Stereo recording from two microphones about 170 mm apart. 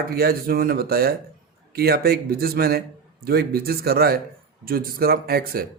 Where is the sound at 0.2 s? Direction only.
60° right (ahead or behind).